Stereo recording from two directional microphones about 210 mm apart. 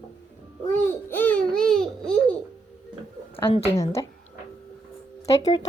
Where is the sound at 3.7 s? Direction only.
15° left (ahead or behind).